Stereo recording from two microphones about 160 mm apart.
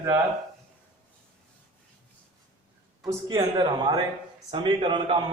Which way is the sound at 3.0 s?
25° right (ahead or behind).